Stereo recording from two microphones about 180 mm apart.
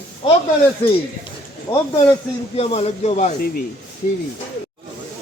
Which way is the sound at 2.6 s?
35° left (ahead or behind).